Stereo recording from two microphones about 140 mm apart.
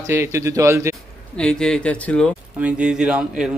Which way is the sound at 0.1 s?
20° right (ahead or behind).